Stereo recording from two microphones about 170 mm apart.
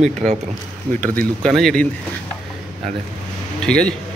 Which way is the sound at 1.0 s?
5° left (ahead or behind).